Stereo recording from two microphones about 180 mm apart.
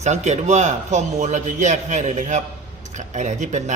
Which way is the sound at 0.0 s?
40° right (ahead or behind).